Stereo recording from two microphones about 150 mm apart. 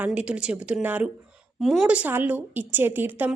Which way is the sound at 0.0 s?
10° right (ahead or behind).